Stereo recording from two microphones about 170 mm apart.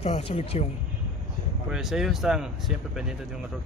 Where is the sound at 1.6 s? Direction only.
Centre (ahead or behind).